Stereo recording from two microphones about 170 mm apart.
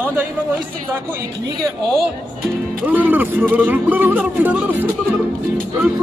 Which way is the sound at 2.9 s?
10° right (ahead or behind).